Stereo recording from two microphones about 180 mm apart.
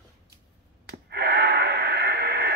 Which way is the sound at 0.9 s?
65° right (ahead or behind).